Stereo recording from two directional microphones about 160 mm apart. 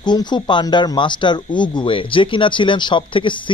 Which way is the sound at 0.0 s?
25° left (ahead or behind).